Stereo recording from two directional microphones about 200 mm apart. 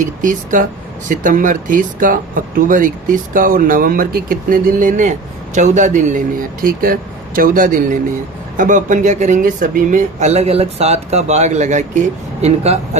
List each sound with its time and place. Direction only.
0.0 s speech: 40° right (ahead or behind)